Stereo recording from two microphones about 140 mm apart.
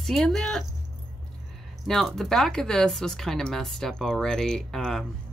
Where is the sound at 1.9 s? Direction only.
Centre (ahead or behind).